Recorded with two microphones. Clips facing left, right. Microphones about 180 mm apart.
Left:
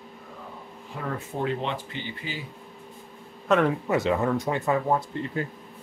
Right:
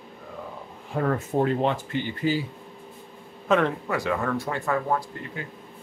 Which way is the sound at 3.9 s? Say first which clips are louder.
Left 3 dB; 20° left (ahead or behind).